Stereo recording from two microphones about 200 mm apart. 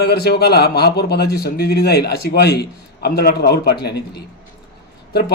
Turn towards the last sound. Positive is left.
turn(degrees=50)  # may be behind; listen again after turning